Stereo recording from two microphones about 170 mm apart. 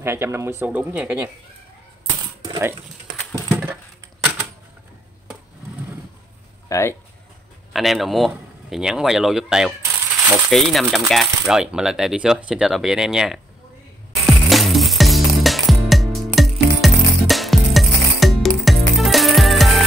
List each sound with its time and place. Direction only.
0.0 s speech: 15° right (ahead or behind)
3.2 s a sound: 5° left (ahead or behind)
6.7 s speech: 15° left (ahead or behind)
7.7 s speech: centre (ahead or behind)
14.2 s music: centre (ahead or behind)